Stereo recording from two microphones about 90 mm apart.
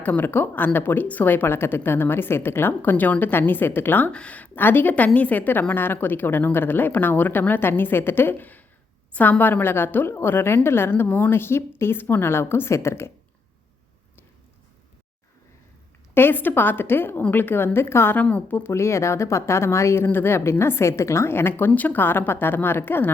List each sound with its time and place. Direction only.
0.0 s speech: 20° left (ahead or behind)
16.1 s speech: 25° left (ahead or behind)